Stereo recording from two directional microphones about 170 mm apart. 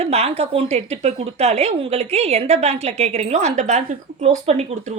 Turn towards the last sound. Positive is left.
turn(degrees=-40)  # may be behind; listen again after turning